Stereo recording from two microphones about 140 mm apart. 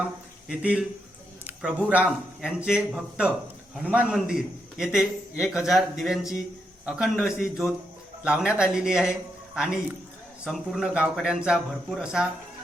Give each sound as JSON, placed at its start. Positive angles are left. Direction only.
{"t": 0.4, "sound": "a man's voice", "side_deg": -5}
{"t": 10.4, "sound": "a man's voice", "side_deg": 0}